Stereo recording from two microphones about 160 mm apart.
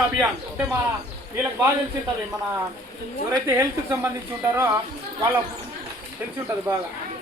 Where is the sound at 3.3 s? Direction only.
20° right (ahead or behind).